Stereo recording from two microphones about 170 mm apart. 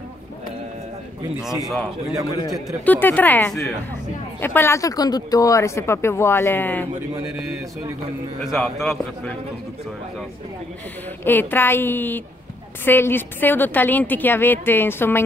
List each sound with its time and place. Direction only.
2.8 s speech: 10° left (ahead or behind)
8.4 s a man's voice: centre (ahead or behind)
11.2 s speech: 10° left (ahead or behind)